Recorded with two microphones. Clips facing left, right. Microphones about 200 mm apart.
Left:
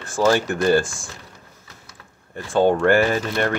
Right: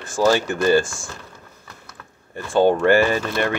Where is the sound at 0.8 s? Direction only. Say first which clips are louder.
Even; 55° left (ahead or behind).